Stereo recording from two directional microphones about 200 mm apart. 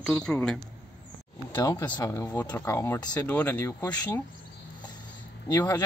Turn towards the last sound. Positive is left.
turn(degrees=15)  # may be behind; listen again after turning